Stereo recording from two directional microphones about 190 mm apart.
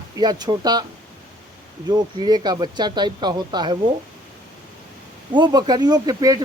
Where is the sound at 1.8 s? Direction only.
20° right (ahead or behind).